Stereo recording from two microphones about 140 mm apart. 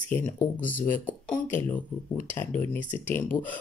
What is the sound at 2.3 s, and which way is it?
Speech, 15° left (ahead or behind).